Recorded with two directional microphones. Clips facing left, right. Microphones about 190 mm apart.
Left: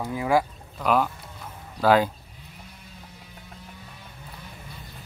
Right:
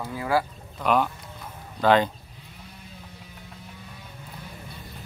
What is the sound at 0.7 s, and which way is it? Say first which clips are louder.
Speech: even; centre (ahead or behind).